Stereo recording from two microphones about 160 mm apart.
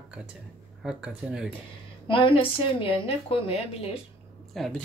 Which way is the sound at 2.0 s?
35° left (ahead or behind).